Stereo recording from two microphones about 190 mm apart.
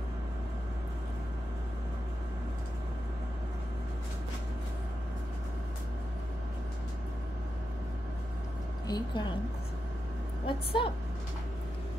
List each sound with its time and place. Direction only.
8.8 s a woman's voice: 20° left (ahead or behind)
10.4 s a woman's voice: 30° left (ahead or behind)